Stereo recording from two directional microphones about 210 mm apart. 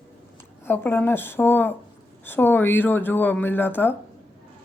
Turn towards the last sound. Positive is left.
turn(degrees=10)  # may be behind; listen again after turning